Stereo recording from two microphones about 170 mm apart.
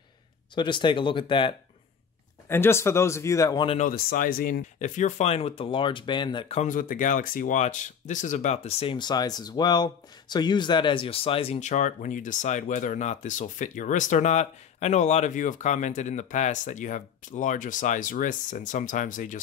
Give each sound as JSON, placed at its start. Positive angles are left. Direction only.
{"t": 0.6, "sound": "speech", "side_deg": 25}
{"t": 2.4, "sound": "speech", "side_deg": 15}
{"t": 3.8, "sound": "speech", "side_deg": 55}
{"t": 6.6, "sound": "speech", "side_deg": 55}